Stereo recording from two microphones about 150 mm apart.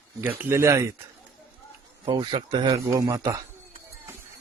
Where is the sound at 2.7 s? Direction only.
20° right (ahead or behind).